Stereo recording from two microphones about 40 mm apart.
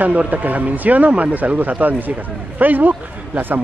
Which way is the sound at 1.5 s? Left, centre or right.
Right.